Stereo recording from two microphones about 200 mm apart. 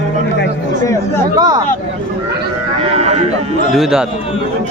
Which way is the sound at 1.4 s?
20° right (ahead or behind).